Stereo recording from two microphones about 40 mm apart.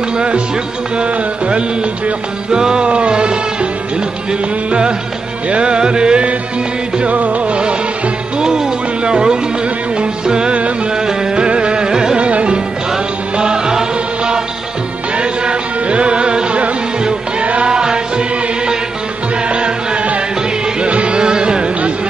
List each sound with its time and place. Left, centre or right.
0.9 s music: right
7.0 s music: right
8.4 s music: centre
12.2 s music: right
12.9 s music: centre
15.1 s music: right
19.5 s music: right